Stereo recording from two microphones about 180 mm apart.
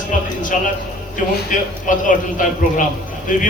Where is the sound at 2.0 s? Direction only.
45° left (ahead or behind).